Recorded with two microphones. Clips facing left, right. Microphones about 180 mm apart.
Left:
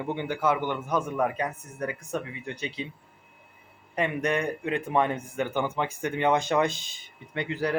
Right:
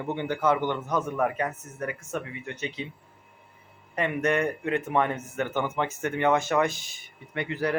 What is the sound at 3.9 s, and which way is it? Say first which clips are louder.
Speech: right 1 dB; 15° left (ahead or behind).